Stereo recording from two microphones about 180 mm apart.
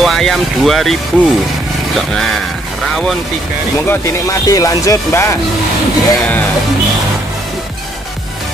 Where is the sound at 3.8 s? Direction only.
20° left (ahead or behind).